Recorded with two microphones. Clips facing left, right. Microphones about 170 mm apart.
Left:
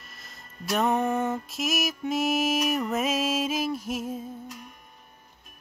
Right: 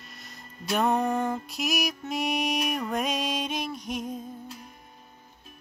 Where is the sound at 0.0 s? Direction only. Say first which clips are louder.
Right 3 dB; centre (ahead or behind).